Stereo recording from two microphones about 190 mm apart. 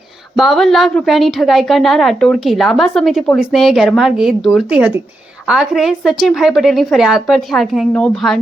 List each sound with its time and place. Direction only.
0.3 s a woman's voice: centre (ahead or behind)